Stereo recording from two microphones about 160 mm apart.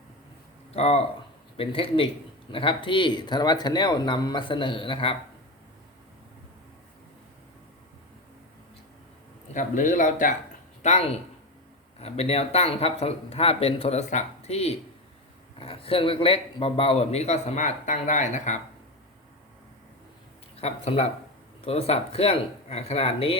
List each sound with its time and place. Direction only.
0.7 s a man's voice: 40° left (ahead or behind)
9.5 s speech: 50° left (ahead or behind)
10.8 s a man's voice: 40° left (ahead or behind)
20.6 s a man's voice: 40° left (ahead or behind)